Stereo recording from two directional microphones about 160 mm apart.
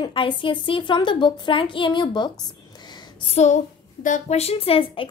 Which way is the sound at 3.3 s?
50° left (ahead or behind).